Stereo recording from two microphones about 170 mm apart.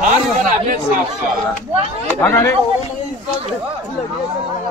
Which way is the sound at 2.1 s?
15° left (ahead or behind).